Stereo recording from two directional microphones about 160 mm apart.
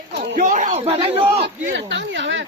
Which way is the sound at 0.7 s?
40° right (ahead or behind).